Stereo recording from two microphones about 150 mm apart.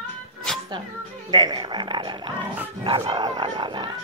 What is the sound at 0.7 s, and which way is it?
Speech, 30° right (ahead or behind).